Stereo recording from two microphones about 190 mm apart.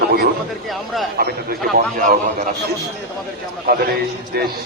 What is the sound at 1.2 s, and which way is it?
Speech, 55° right (ahead or behind).